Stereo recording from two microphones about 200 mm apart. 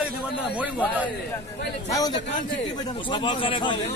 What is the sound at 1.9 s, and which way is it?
A man's voice, 15° left (ahead or behind).